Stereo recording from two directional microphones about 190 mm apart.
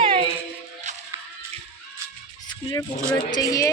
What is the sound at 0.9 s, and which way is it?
Music, 40° right (ahead or behind).